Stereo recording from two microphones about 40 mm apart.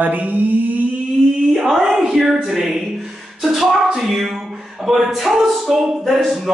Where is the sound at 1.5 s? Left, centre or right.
Centre.